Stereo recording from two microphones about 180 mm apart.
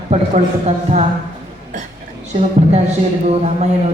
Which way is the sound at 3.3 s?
35° right (ahead or behind).